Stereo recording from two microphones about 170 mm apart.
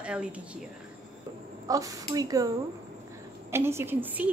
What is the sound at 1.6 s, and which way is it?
A woman's voice, 20° right (ahead or behind).